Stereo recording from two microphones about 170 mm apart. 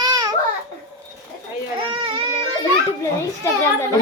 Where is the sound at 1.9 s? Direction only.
30° right (ahead or behind).